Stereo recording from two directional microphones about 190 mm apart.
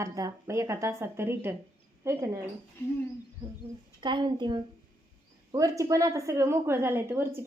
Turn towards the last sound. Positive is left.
turn(degrees=-10)  # may be behind; listen again after turning